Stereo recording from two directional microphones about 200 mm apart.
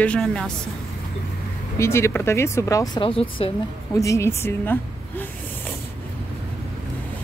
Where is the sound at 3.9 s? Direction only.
15° left (ahead or behind).